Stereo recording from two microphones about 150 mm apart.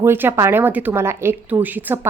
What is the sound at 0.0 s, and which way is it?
A woman's voice, 15° right (ahead or behind).